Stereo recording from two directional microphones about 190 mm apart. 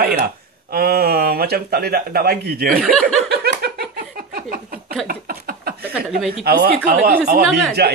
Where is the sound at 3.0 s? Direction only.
55° right (ahead or behind).